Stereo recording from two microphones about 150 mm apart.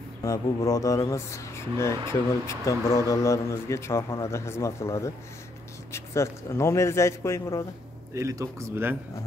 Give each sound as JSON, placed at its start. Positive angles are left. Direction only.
{"t": 0.2, "sound": "speech", "side_deg": 25}
{"t": 8.1, "sound": "speech", "side_deg": -20}